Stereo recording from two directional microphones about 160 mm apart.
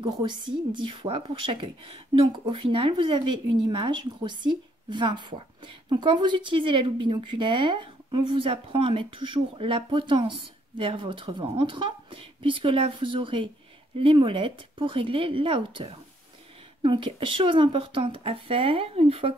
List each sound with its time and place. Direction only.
0.0 s a woman's voice: 30° right (ahead or behind)